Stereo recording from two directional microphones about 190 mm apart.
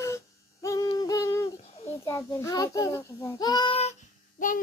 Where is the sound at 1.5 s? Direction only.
35° left (ahead or behind).